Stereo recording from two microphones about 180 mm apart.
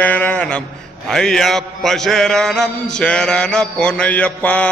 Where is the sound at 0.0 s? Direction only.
10° left (ahead or behind).